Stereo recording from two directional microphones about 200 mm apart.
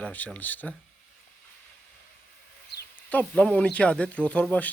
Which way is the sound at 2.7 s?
55° left (ahead or behind).